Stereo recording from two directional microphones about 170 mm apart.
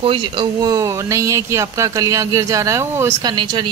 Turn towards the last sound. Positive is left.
turn(degrees=-25)  # may be behind; listen again after turning